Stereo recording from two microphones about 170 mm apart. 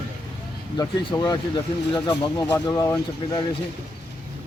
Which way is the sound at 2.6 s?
20° left (ahead or behind).